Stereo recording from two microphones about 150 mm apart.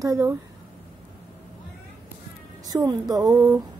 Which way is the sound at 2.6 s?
25° right (ahead or behind).